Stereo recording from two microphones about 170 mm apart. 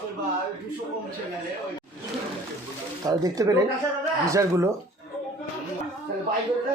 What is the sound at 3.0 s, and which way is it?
A man's voice, 20° right (ahead or behind).